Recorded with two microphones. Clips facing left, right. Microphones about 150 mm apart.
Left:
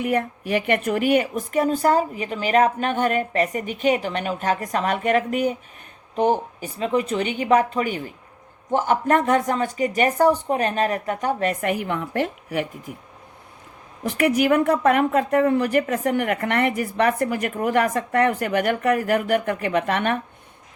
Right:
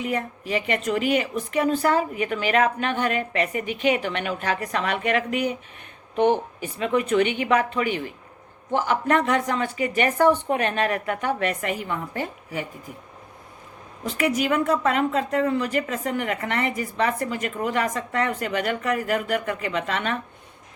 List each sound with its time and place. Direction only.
0.0 s a woman's voice: 55° left (ahead or behind); by 11.7 s 40° left (ahead or behind)
11.7 s a woman's voice: 65° left (ahead or behind)
14.0 s a woman's voice: 60° left (ahead or behind)